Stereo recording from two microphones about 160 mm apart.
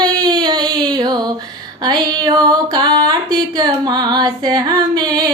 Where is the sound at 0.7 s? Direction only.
25° right (ahead or behind).